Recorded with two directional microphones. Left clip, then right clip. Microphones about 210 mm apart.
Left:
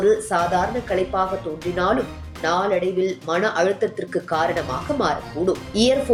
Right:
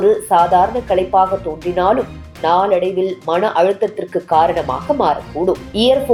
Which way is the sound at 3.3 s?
Centre (ahead or behind).